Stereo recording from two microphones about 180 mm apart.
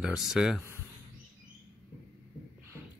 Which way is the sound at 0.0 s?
5° right (ahead or behind).